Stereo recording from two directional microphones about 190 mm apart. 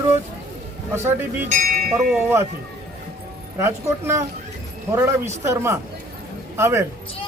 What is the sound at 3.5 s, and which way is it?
A man's voice, 15° right (ahead or behind).